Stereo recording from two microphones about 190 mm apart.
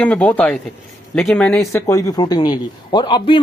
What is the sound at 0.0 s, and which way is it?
Speech, 5° left (ahead or behind).